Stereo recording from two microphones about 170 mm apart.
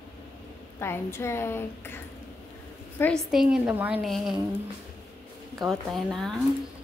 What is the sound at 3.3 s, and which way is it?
A woman's voice, 5° right (ahead or behind).